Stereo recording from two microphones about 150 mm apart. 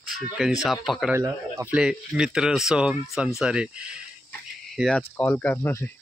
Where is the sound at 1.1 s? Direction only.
15° right (ahead or behind).